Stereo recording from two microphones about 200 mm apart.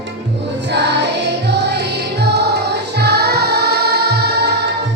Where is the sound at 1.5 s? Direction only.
55° right (ahead or behind).